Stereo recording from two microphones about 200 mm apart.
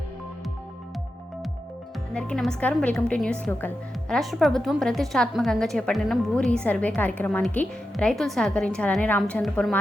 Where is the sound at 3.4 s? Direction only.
10° left (ahead or behind).